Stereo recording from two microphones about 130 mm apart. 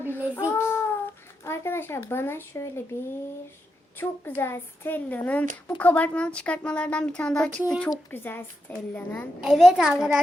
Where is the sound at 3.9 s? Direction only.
15° left (ahead or behind).